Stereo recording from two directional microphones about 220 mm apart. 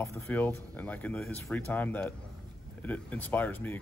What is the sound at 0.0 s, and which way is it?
Speech, 10° left (ahead or behind).